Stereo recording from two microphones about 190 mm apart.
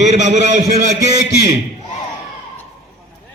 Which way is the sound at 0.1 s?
40° right (ahead or behind).